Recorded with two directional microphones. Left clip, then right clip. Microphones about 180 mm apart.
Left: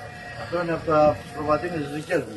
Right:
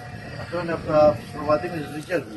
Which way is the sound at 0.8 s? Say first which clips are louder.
Right 2 dB; 5° left (ahead or behind).